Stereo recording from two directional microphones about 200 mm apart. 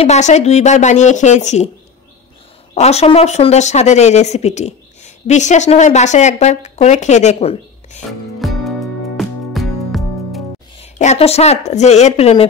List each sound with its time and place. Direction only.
0.0 s speech: 35° left (ahead or behind)
2.7 s speech: 30° left (ahead or behind)
8.4 s music: centre (ahead or behind)
10.8 s a woman's voice: 35° left (ahead or behind)